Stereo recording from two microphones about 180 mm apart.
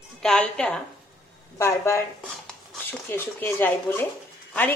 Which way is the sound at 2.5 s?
5° left (ahead or behind).